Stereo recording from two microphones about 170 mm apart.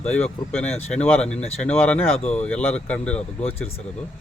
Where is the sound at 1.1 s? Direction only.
5° left (ahead or behind).